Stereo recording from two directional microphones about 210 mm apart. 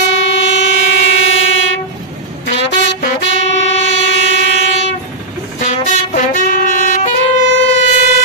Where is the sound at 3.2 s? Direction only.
60° left (ahead or behind).